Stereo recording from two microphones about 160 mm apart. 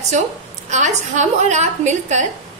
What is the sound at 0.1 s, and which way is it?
A woman's voice, 50° right (ahead or behind).